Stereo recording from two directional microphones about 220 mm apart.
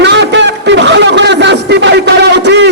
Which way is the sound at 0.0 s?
50° right (ahead or behind).